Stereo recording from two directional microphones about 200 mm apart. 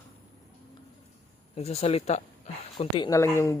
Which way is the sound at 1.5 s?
30° left (ahead or behind).